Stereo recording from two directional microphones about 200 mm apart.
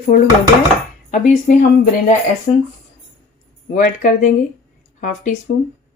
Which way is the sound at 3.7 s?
40° left (ahead or behind).